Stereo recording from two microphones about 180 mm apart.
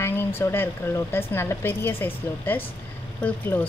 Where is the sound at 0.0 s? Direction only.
10° left (ahead or behind).